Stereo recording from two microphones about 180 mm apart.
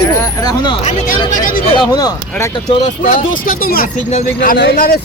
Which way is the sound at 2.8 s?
45° left (ahead or behind).